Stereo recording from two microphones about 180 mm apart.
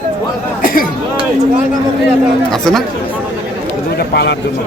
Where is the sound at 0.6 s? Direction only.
55° left (ahead or behind).